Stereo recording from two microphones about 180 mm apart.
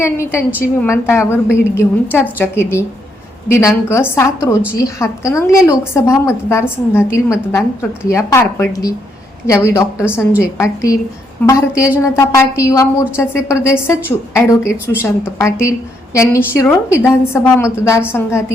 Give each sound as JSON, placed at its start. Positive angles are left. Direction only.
{"t": 0.0, "sound": "a woman's voice", "side_deg": 15}
{"t": 15.0, "sound": "a woman's voice", "side_deg": 15}